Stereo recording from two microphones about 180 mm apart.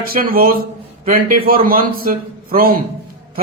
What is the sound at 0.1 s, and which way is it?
A man's voice, 55° right (ahead or behind).